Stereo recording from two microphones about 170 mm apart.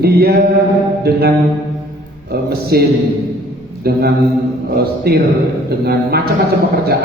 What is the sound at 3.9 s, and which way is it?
Speech, 65° right (ahead or behind).